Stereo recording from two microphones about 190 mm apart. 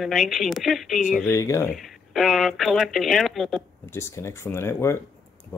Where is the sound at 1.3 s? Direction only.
15° left (ahead or behind).